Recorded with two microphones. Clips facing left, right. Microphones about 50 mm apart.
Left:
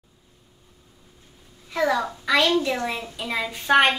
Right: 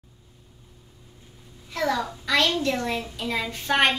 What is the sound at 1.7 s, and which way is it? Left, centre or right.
A child's voice, centre.